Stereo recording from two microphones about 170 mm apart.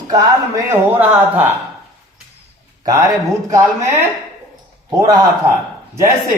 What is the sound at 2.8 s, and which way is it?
Speech, 20° right (ahead or behind).